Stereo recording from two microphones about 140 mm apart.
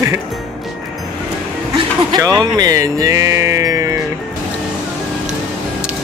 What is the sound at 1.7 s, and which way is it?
Speech, 30° right (ahead or behind).